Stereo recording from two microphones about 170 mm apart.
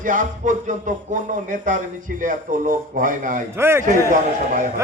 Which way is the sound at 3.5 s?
15° right (ahead or behind).